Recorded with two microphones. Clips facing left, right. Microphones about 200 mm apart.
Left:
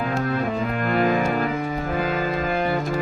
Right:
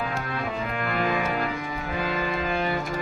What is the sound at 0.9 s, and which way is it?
Music, 45° left (ahead or behind).